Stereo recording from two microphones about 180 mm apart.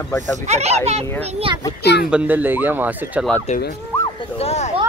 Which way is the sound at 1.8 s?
65° left (ahead or behind).